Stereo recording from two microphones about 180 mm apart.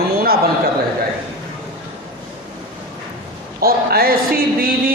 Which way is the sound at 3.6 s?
55° right (ahead or behind).